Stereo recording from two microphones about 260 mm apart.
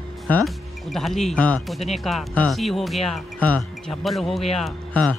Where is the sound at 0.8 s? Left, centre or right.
Centre.